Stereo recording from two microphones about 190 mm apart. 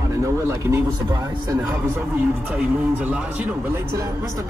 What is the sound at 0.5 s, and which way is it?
Speech, 15° right (ahead or behind).